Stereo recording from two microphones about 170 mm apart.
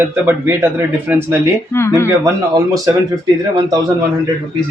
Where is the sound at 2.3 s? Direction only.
20° right (ahead or behind).